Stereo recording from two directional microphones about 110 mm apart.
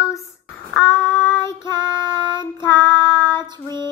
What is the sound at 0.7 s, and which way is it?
Child singing, 25° left (ahead or behind).